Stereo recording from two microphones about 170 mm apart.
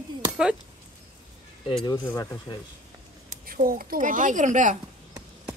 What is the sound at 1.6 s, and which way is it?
Speech, 30° left (ahead or behind).